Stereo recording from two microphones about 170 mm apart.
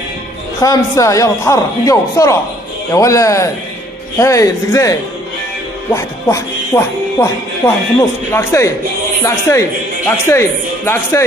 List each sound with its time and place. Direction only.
0.6 s a man's voice: 20° left (ahead or behind)
5.9 s speech: 15° left (ahead or behind)